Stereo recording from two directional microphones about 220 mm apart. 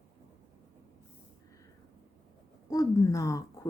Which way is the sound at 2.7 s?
15° left (ahead or behind).